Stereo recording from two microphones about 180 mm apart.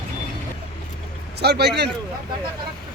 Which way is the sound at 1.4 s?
65° right (ahead or behind).